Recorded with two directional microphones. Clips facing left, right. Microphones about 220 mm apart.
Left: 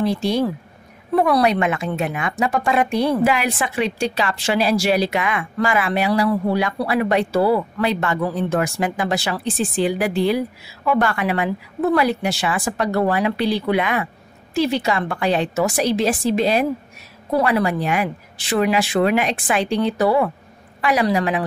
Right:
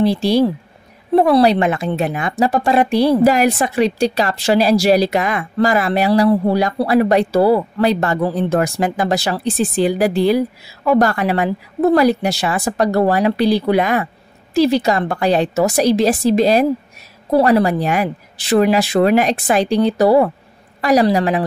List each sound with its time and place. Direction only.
0.0 s speech: 35° right (ahead or behind)